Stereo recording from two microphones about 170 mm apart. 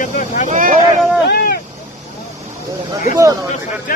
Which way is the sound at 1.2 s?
70° left (ahead or behind).